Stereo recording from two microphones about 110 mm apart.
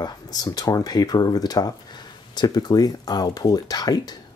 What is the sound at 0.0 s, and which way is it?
Speech, 35° left (ahead or behind).